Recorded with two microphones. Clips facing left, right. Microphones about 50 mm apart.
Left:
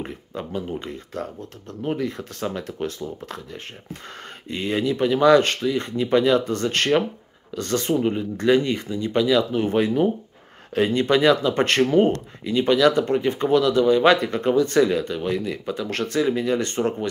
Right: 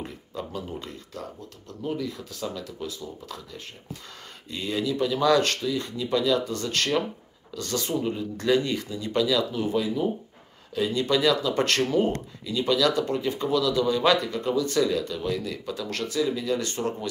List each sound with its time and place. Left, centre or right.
0.0 s speech: left
4.5 s speech: left
9.7 s speech: left